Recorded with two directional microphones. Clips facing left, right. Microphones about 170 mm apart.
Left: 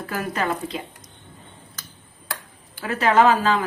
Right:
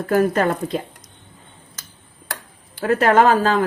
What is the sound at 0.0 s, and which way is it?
Speech, 50° right (ahead or behind).